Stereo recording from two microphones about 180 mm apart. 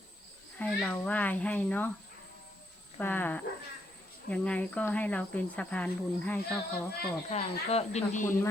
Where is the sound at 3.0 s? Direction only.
10° left (ahead or behind).